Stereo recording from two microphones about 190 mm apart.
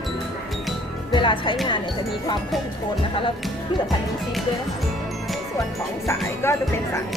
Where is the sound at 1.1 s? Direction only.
25° left (ahead or behind).